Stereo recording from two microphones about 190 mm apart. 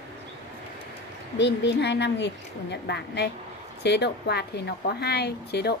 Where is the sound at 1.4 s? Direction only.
65° left (ahead or behind).